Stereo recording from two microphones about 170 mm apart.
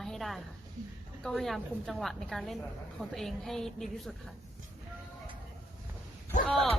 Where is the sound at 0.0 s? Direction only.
Centre (ahead or behind).